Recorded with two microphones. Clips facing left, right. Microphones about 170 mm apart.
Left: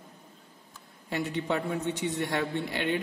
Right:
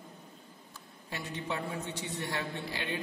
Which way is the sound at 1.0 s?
65° left (ahead or behind).